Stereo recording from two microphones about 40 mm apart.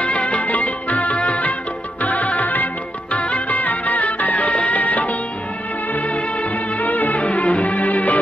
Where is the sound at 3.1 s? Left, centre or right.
Left.